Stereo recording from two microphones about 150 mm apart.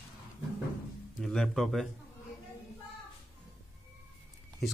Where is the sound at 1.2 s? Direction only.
5° left (ahead or behind).